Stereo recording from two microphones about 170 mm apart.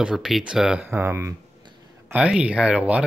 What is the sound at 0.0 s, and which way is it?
Speech, 5° right (ahead or behind).